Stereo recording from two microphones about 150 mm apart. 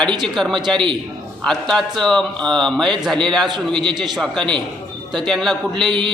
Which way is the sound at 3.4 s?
30° right (ahead or behind).